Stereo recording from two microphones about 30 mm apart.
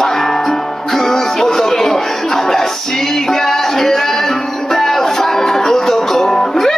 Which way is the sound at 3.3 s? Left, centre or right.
Centre.